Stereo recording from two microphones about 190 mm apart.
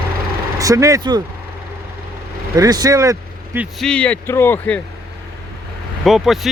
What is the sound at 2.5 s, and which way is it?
Speech, 20° right (ahead or behind).